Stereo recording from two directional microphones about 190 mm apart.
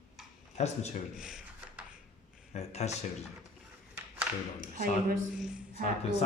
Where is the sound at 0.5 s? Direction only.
35° left (ahead or behind).